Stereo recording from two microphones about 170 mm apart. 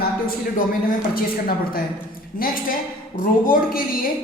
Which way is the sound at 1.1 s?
60° left (ahead or behind).